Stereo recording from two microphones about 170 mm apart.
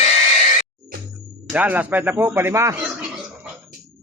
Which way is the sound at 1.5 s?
10° right (ahead or behind).